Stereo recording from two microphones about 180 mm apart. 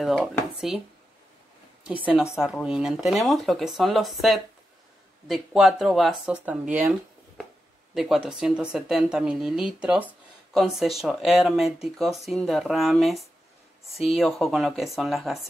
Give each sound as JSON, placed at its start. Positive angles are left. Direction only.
{"t": 0.0, "sound": "speech", "side_deg": 5}
{"t": 1.9, "sound": "a woman's voice", "side_deg": -5}